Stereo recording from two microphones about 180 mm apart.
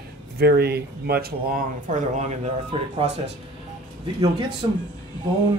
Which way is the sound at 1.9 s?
40° right (ahead or behind).